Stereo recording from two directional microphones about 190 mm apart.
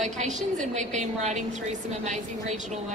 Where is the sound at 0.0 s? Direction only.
40° right (ahead or behind).